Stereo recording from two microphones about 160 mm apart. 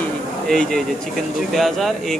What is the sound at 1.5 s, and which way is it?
Speech, centre (ahead or behind).